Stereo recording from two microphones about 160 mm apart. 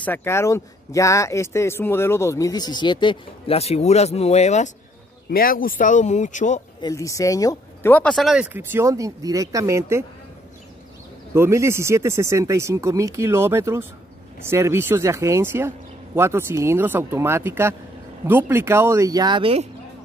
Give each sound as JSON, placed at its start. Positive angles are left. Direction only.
{"t": 0.0, "sound": "speech", "side_deg": 15}
{"t": 5.3, "sound": "speech", "side_deg": 65}
{"t": 6.8, "sound": "speech", "side_deg": 20}
{"t": 7.9, "sound": "speech", "side_deg": 5}
{"t": 8.5, "sound": "speech", "side_deg": -15}
{"t": 11.3, "sound": "speech", "side_deg": -15}